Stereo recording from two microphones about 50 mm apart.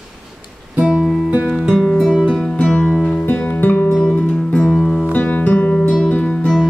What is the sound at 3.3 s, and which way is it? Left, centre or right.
Music, left.